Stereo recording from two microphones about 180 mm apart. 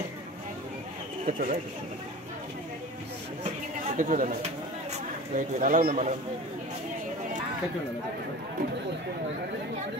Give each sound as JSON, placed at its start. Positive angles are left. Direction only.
{"t": 1.2, "sound": "speech", "side_deg": -45}
{"t": 3.9, "sound": "speech", "side_deg": -45}